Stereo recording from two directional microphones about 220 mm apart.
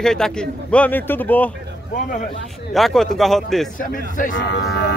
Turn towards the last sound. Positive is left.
turn(degrees=50)  # may be behind; listen again after turning